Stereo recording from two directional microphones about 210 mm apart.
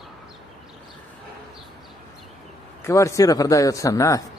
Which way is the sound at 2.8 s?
15° left (ahead or behind).